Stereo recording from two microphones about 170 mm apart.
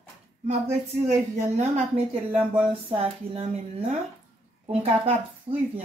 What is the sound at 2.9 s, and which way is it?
A woman's voice, 35° right (ahead or behind).